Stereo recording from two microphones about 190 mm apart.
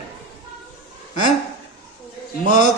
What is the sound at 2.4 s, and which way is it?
Speech, 40° left (ahead or behind).